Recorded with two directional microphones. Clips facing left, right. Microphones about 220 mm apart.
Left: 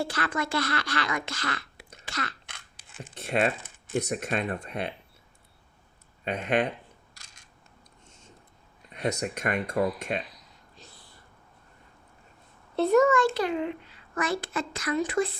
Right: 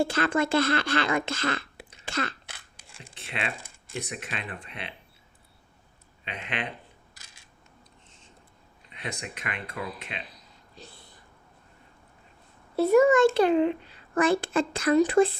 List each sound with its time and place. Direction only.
0.0 s speech: 25° right (ahead or behind)
2.8 s a sound: 5° left (ahead or behind)
3.2 s speech: 45° left (ahead or behind)
3.5 s typing: centre (ahead or behind)
3.9 s speech: 45° left (ahead or behind)
6.2 s speech: 45° left (ahead or behind)
8.0 s a sound: 45° left (ahead or behind)
8.9 s speech: 45° left (ahead or behind)
10.8 s a sound: 30° right (ahead or behind)
12.7 s a child's voice: 10° right (ahead or behind)
13.3 s a child's voice: 30° right (ahead or behind)